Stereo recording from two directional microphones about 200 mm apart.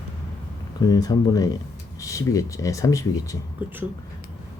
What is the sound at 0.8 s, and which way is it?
Speech, 20° left (ahead or behind).